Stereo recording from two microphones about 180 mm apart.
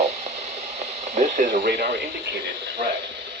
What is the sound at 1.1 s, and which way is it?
Speech, 45° right (ahead or behind).